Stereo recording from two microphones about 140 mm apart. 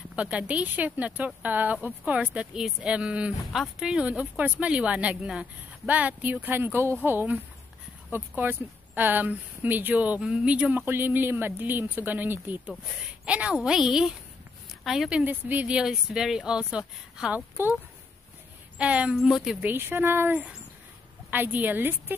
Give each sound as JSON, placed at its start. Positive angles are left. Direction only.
{"t": 0.1, "sound": "a woman's voice", "side_deg": -10}
{"t": 18.8, "sound": "a woman's voice", "side_deg": -10}
{"t": 19.6, "sound": "a woman's voice", "side_deg": -15}